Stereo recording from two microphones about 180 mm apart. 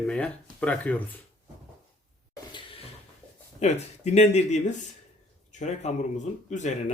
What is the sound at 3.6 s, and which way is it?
A man's voice, 40° left (ahead or behind).